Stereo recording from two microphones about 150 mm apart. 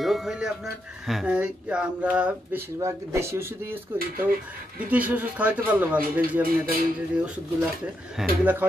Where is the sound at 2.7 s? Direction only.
20° right (ahead or behind).